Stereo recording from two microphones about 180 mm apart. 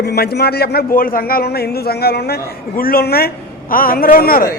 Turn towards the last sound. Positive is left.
turn(degrees=55)  # may be behind; listen again after turning